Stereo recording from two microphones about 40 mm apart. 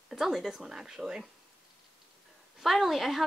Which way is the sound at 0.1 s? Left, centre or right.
Centre.